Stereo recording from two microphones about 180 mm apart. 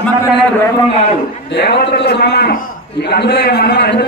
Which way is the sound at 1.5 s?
70° left (ahead or behind).